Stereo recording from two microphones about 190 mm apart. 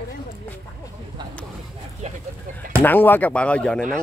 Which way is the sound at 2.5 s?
40° right (ahead or behind).